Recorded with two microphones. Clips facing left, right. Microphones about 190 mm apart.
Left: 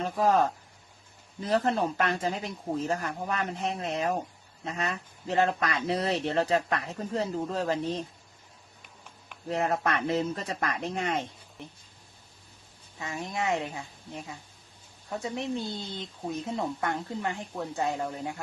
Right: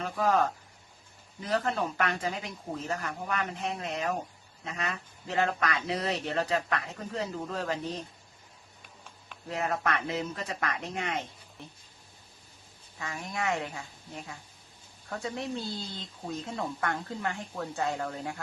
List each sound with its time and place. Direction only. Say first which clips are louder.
0.0 s speech: left 2 dB; 30° left (ahead or behind)
9.5 s speech: left 3 dB; 35° left (ahead or behind)
13.0 s speech: left 2 dB; 20° left (ahead or behind)